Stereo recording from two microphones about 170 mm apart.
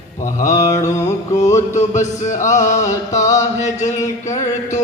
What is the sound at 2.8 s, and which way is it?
Music, 20° left (ahead or behind).